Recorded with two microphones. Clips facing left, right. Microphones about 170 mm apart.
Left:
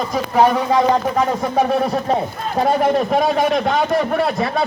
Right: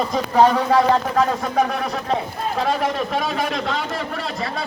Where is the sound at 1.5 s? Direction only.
25° left (ahead or behind).